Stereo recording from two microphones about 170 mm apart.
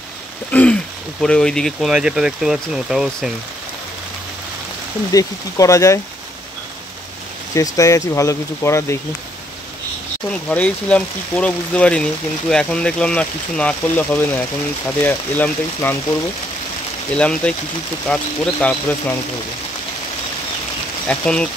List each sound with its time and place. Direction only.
0.5 s speech: 10° left (ahead or behind)
5.1 s speech: 20° left (ahead or behind)
7.5 s speech: 20° left (ahead or behind)
10.2 s speech: 5° left (ahead or behind)
17.1 s speech: 5° left (ahead or behind)
21.1 s speech: 5° left (ahead or behind)